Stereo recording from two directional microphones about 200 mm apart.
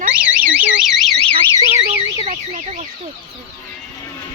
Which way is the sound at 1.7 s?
30° right (ahead or behind).